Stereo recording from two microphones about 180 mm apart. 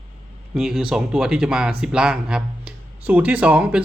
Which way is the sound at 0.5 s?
5° right (ahead or behind).